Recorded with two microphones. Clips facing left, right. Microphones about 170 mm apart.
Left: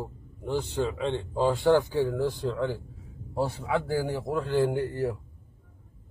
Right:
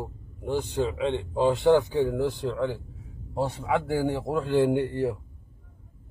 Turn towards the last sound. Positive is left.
turn(degrees=-25)  # may be behind; listen again after turning